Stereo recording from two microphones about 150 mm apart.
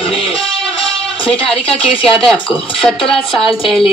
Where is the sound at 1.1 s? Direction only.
40° left (ahead or behind).